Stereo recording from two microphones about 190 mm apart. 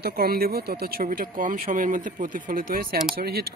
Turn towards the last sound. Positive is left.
turn(degrees=-55)  # may be behind; listen again after turning